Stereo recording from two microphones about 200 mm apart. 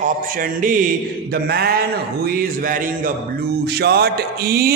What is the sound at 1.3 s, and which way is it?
Speech, 50° right (ahead or behind).